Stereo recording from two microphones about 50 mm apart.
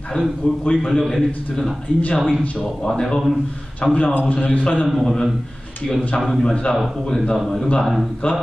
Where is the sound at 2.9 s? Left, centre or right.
Centre.